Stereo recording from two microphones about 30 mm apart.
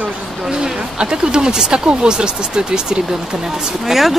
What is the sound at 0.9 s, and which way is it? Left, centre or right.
Speech, right.